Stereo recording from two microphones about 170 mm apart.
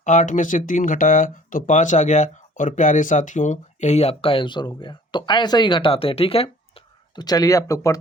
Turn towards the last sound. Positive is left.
turn(degrees=20)  # may be behind; listen again after turning